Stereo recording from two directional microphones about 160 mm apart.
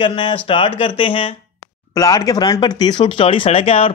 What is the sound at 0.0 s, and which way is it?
Speech, 30° left (ahead or behind).